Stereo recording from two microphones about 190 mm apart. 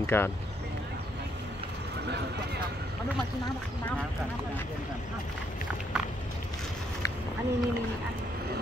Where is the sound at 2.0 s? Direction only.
60° right (ahead or behind).